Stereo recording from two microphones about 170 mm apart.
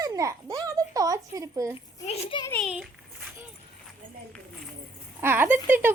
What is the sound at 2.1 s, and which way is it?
Speech, 35° left (ahead or behind).